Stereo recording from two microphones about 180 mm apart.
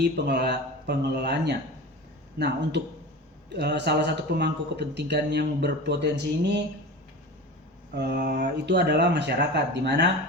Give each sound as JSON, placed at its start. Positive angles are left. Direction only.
{"t": 0.0, "sound": "speech", "side_deg": -65}
{"t": 3.5, "sound": "speech", "side_deg": -65}
{"t": 7.9, "sound": "speech", "side_deg": -65}